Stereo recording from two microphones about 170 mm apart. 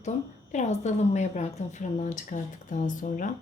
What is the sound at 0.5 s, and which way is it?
A woman's voice, 40° left (ahead or behind).